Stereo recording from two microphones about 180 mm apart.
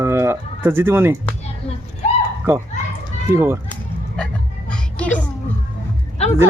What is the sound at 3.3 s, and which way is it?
Speech, 15° right (ahead or behind).